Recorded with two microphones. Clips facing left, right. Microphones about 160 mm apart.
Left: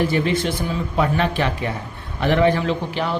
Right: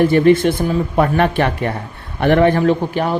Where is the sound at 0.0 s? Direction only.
55° right (ahead or behind).